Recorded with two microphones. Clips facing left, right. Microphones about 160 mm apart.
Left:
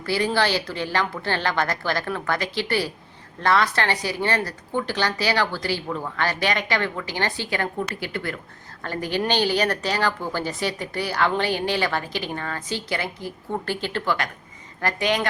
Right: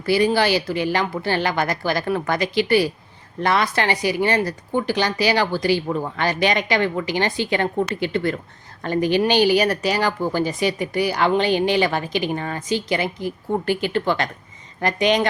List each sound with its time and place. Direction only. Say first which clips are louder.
0.0 s speech: right 5 dB; 15° right (ahead or behind)